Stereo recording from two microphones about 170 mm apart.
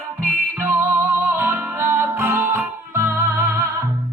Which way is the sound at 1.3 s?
10° right (ahead or behind).